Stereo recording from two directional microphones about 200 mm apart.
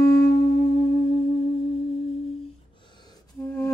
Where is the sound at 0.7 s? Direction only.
25° left (ahead or behind).